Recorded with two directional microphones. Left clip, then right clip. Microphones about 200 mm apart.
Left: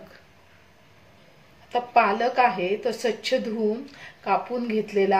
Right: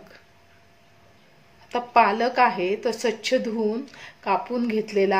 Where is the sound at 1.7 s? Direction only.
35° right (ahead or behind).